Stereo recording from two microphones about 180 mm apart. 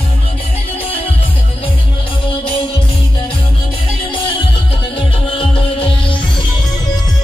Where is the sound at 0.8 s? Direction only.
30° left (ahead or behind).